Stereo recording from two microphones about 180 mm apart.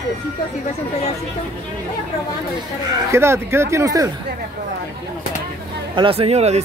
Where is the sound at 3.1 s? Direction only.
15° right (ahead or behind).